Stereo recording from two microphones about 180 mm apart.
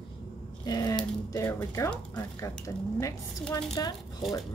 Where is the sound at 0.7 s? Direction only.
20° left (ahead or behind).